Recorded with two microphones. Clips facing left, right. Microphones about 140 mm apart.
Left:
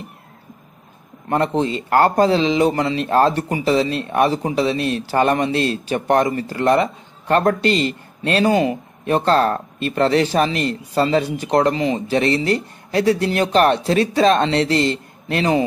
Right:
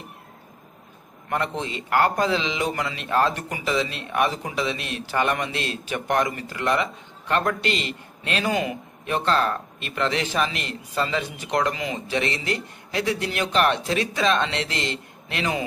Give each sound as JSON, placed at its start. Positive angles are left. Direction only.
{"t": 1.3, "sound": "a man's voice", "side_deg": 35}